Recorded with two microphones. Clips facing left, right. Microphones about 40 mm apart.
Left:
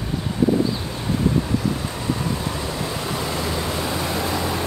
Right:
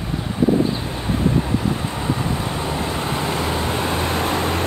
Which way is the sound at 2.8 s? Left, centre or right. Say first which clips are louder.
Right 3 dB; right.